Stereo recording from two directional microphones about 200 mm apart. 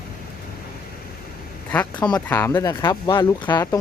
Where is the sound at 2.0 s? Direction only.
10° left (ahead or behind).